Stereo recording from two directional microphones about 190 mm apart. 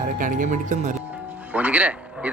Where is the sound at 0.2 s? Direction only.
45° right (ahead or behind).